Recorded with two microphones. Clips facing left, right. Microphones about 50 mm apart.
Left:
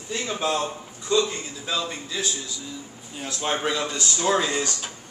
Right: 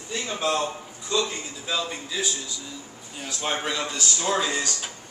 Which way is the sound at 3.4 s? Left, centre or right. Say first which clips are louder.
Left 2 dB; centre.